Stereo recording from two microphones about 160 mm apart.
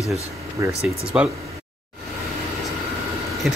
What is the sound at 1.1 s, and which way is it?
Speech, 5° right (ahead or behind).